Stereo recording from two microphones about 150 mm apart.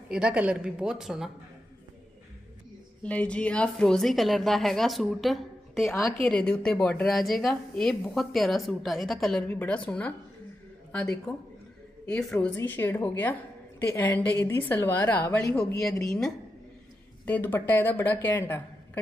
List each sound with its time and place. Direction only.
0.1 s speech: 5° right (ahead or behind)
3.0 s speech: 10° left (ahead or behind)
5.9 s a woman's voice: 20° left (ahead or behind)
6.2 s a woman's voice: 10° left (ahead or behind)
17.3 s a woman's voice: 15° left (ahead or behind)